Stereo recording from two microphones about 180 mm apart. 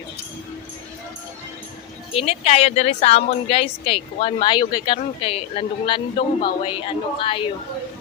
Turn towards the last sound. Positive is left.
turn(degrees=30)  # may be behind; listen again after turning